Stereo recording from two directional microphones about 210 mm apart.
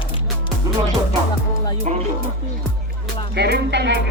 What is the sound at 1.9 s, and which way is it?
Speech, 35° right (ahead or behind).